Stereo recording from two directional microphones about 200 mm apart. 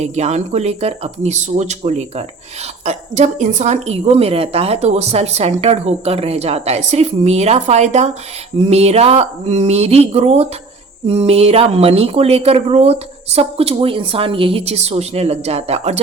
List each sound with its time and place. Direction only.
0.0 s speech: 35° right (ahead or behind)